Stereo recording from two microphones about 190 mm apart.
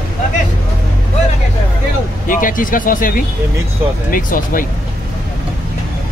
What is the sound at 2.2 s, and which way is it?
Speech, 45° left (ahead or behind).